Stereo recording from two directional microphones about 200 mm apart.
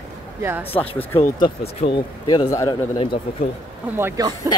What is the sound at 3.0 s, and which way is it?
Speech, 30° left (ahead or behind).